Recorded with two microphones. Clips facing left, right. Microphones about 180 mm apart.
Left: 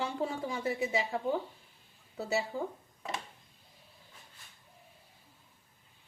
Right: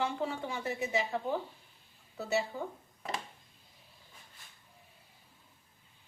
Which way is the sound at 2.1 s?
30° left (ahead or behind).